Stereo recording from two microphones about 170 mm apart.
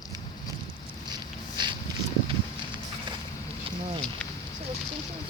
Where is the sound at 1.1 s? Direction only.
25° right (ahead or behind).